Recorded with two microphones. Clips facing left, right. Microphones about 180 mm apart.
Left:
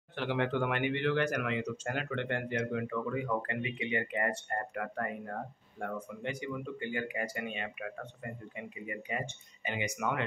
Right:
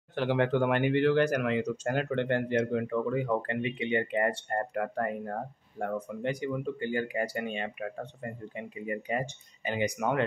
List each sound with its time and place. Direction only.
0.1 s speech: 40° right (ahead or behind)